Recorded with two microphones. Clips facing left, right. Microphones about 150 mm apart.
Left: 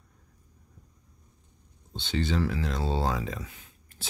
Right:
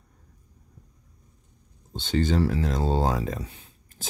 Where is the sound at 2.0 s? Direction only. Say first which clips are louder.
Right 5 dB; 45° right (ahead or behind).